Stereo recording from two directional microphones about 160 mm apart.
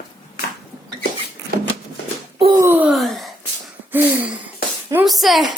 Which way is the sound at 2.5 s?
15° right (ahead or behind).